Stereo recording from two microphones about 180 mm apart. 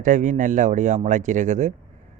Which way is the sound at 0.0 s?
45° right (ahead or behind).